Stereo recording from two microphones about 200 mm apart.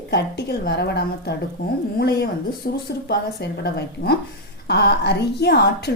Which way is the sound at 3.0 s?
55° left (ahead or behind).